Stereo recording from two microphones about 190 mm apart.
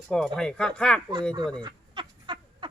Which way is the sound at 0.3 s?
5° left (ahead or behind).